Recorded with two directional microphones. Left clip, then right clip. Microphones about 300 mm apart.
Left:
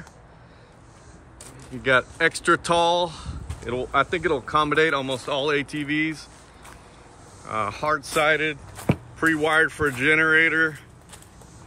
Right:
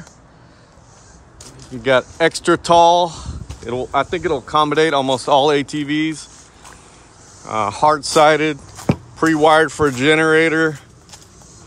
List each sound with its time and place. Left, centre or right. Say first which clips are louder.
1.7 s speech: right 5 dB; centre
7.4 s speech: right 10 dB; centre